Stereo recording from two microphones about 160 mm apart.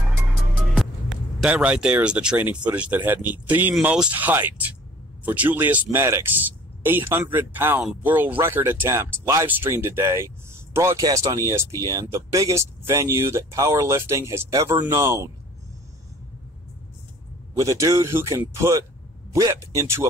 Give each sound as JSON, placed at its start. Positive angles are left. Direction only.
{"t": 1.4, "sound": "speech", "side_deg": -10}
{"t": 17.6, "sound": "speech", "side_deg": -20}